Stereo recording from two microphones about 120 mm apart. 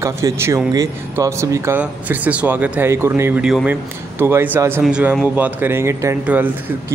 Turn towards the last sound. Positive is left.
turn(degrees=-15)  # may be behind; listen again after turning